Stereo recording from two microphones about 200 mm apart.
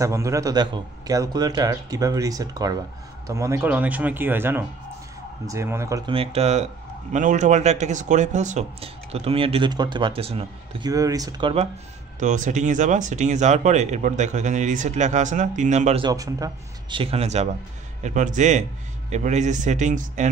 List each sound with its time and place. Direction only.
0.0 s a man's voice: 15° right (ahead or behind)
10.9 s a man's voice: 15° right (ahead or behind)
12.2 s speech: 40° right (ahead or behind)
16.0 s a man's voice: 20° right (ahead or behind); by 20.2 s 40° right (ahead or behind)